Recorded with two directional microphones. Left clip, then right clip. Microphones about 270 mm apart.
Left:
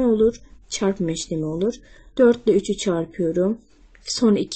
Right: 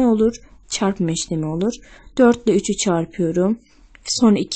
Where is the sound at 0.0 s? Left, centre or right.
Right.